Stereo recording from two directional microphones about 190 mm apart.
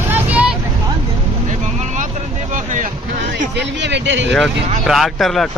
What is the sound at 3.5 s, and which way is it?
Speech, 65° right (ahead or behind).